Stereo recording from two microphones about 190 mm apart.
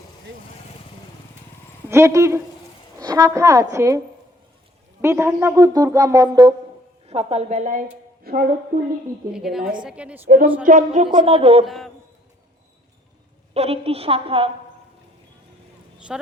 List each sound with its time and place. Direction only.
1.9 s speech: 15° right (ahead or behind)
5.0 s speech: 15° right (ahead or behind)
7.1 s a woman's voice: 30° right (ahead or behind); by 8.4 s 50° right (ahead or behind)
9.3 s a woman's voice: centre (ahead or behind)
10.2 s a woman's voice: 50° right (ahead or behind)
11.0 s speech: 25° right (ahead or behind)
11.6 s a woman's voice: centre (ahead or behind)
13.5 s a woman's voice: 30° right (ahead or behind)
16.1 s a woman's voice: 5° right (ahead or behind)